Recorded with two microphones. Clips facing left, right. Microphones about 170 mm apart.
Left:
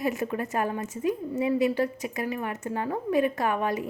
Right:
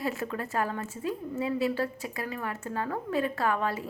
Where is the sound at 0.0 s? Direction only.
20° left (ahead or behind).